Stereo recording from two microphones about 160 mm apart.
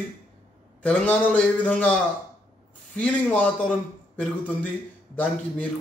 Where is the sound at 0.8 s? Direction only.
5° left (ahead or behind).